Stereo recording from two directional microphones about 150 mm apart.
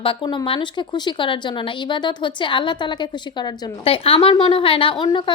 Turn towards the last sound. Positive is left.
turn(degrees=35)  # may be behind; listen again after turning